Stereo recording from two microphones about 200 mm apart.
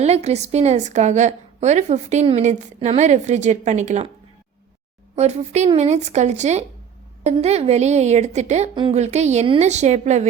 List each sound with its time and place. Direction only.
0.0 s a woman's voice: 30° right (ahead or behind)
5.1 s a woman's voice: 35° right (ahead or behind)